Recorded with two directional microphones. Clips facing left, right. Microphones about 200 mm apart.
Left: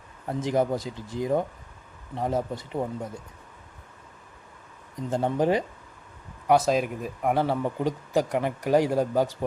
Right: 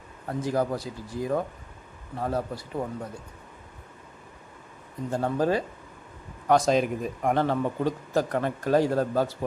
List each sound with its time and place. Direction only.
0.3 s speech: 20° left (ahead or behind)
5.1 s speech: 20° left (ahead or behind)
6.5 s speech: 5° left (ahead or behind)